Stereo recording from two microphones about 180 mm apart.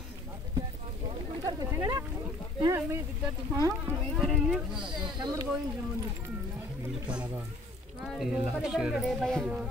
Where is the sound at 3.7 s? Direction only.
Centre (ahead or behind).